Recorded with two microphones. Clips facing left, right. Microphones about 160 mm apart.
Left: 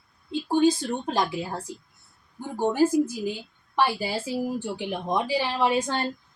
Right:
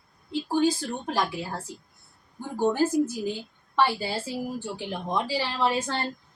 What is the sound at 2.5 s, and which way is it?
A woman's voice, 15° left (ahead or behind).